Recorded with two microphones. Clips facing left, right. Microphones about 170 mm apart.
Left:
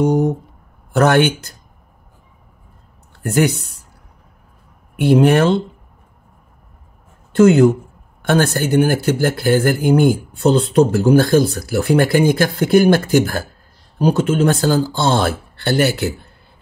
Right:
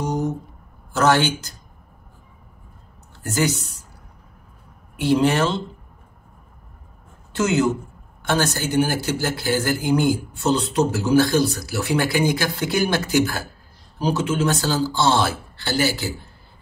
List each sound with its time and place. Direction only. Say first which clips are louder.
0.0 s a sound: left 8 dB; 60° left (ahead or behind)
0.9 s speech: left 5 dB; 60° left (ahead or behind)
3.2 s speech: left 6 dB; 60° left (ahead or behind)
4.9 s speech: left 6 dB; 55° left (ahead or behind)
7.3 s speech: left 9 dB; 55° left (ahead or behind)